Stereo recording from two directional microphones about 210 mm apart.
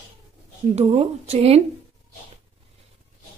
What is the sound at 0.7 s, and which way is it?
Speech, 30° right (ahead or behind).